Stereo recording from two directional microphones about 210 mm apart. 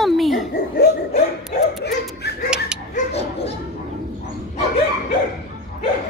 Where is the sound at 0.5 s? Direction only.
45° left (ahead or behind).